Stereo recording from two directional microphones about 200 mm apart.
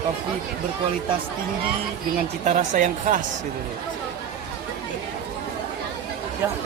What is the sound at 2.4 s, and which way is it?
Speech, 40° right (ahead or behind).